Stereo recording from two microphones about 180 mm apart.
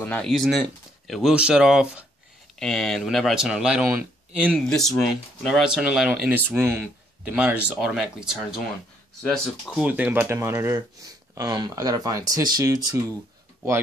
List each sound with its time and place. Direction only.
0.0 s speech: 5° left (ahead or behind); by 13.0 s 20° right (ahead or behind)